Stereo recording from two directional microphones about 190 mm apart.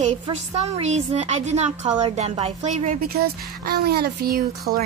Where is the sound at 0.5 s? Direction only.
35° right (ahead or behind).